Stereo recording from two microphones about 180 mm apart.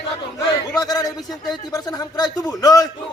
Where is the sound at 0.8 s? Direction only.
20° left (ahead or behind).